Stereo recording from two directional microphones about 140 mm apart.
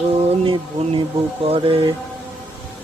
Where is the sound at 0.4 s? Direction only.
35° right (ahead or behind).